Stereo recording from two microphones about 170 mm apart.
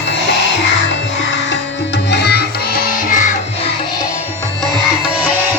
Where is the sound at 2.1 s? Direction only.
75° left (ahead or behind); by 3.3 s 55° left (ahead or behind).